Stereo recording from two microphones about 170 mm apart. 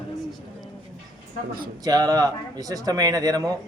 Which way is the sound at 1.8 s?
20° right (ahead or behind).